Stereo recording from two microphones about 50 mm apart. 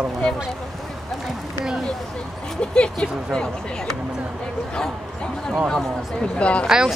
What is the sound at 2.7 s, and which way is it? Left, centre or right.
Speech, centre.